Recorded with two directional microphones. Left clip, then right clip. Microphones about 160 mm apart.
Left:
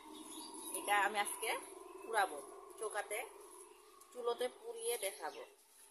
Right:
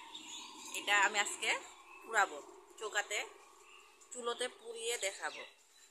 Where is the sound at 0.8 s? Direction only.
10° left (ahead or behind).